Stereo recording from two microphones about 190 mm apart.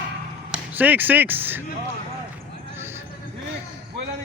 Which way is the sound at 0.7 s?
10° right (ahead or behind).